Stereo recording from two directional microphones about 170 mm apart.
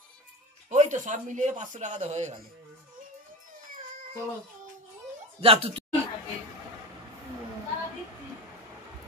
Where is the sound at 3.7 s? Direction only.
55° right (ahead or behind).